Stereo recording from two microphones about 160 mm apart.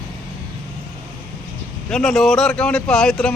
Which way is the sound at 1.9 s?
5° left (ahead or behind).